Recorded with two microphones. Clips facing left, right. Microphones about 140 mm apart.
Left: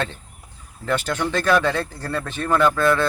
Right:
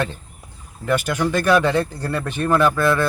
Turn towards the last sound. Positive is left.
turn(degrees=-10)  # may be behind; listen again after turning